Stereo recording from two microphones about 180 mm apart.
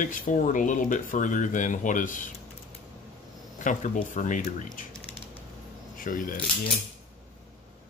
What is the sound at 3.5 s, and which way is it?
Speech, 45° left (ahead or behind).